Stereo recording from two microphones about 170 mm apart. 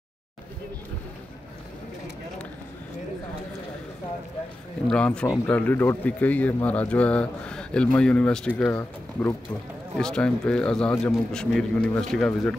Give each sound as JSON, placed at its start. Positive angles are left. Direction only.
{"t": 4.8, "sound": "a man's voice", "side_deg": 5}